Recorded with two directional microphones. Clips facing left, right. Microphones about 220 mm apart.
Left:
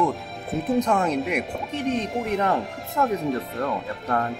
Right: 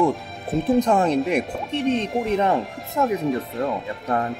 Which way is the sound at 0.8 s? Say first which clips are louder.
Right 4 dB; 30° right (ahead or behind).